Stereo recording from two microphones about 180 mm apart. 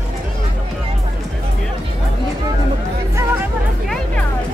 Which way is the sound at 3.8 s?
5° left (ahead or behind).